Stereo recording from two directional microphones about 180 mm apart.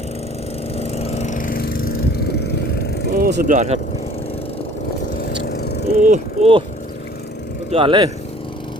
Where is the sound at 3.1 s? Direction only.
55° right (ahead or behind).